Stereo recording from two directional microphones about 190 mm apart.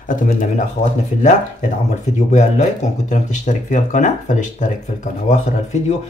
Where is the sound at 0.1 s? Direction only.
45° left (ahead or behind).